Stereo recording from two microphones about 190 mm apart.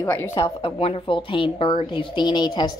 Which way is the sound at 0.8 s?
30° left (ahead or behind).